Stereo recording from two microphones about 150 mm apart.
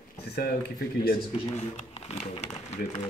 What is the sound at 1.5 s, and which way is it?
Speech, 45° left (ahead or behind).